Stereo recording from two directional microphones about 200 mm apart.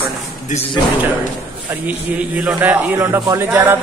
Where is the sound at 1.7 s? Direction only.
5° right (ahead or behind).